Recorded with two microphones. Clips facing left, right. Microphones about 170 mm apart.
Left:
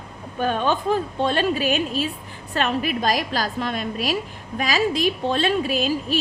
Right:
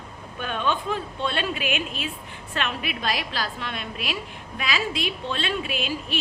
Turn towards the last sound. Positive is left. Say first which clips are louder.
# left 7 dB
turn(degrees=40)  # may be behind; listen again after turning